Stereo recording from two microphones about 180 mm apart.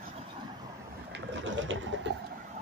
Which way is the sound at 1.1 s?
90° right.